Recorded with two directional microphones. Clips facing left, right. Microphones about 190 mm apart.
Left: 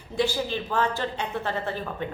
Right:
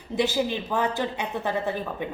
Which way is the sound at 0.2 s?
15° right (ahead or behind).